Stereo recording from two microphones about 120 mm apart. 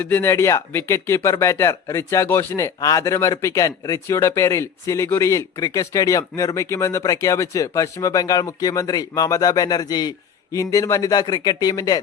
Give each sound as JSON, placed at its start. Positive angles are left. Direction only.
{"t": 0.0, "sound": "speech", "side_deg": 15}